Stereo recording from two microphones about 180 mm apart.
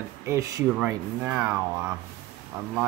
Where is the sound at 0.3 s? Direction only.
15° right (ahead or behind).